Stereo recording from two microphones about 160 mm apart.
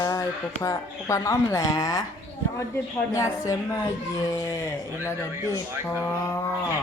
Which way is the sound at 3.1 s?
20° left (ahead or behind).